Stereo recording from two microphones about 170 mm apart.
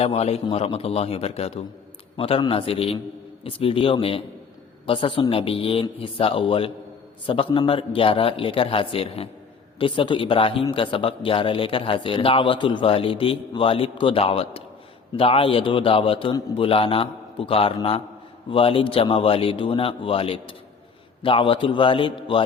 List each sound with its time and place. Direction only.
0.0 s a man's voice: 35° left (ahead or behind)